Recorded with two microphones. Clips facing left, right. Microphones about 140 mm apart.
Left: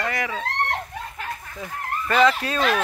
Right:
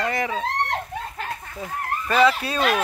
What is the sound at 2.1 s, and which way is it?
Speech, 10° right (ahead or behind).